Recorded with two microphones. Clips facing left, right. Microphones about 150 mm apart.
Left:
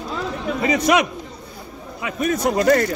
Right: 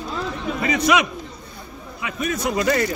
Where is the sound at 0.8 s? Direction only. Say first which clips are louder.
Left 1 dB; 45° left (ahead or behind).